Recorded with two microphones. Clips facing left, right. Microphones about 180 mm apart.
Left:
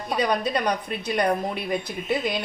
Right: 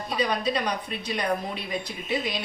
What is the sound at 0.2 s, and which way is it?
A woman's voice, 55° left (ahead or behind).